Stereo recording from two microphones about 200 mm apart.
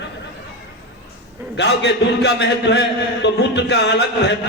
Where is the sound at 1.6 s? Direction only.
60° left (ahead or behind).